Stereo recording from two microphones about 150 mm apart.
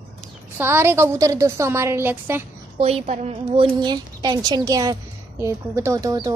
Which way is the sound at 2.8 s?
45° right (ahead or behind).